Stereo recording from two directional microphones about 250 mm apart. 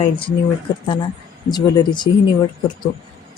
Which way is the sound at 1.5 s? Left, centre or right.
Centre.